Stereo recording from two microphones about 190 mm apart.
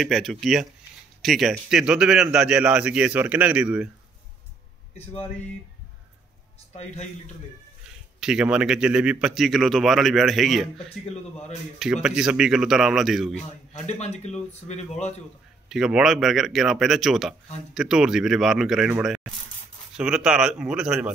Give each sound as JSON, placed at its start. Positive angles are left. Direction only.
{"t": 0.0, "sound": "speech", "side_deg": 0}
{"t": 4.9, "sound": "speech", "side_deg": 30}
{"t": 8.2, "sound": "speech", "side_deg": -5}
{"t": 11.8, "sound": "speech", "side_deg": -5}
{"t": 13.7, "sound": "a man's voice", "side_deg": 35}
{"t": 15.7, "sound": "speech", "side_deg": 0}